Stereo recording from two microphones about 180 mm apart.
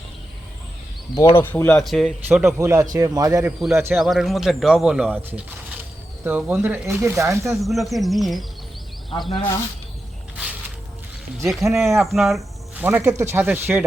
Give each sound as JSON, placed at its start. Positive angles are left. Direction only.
{"t": 1.1, "sound": "speech", "side_deg": 15}
{"t": 2.6, "sound": "speech", "side_deg": -15}
{"t": 3.4, "sound": "speech", "side_deg": 0}
{"t": 7.6, "sound": "speech", "side_deg": 0}
{"t": 10.3, "sound": "a sound", "side_deg": -5}
{"t": 11.4, "sound": "speech", "side_deg": 0}
{"t": 12.8, "sound": "speech", "side_deg": -10}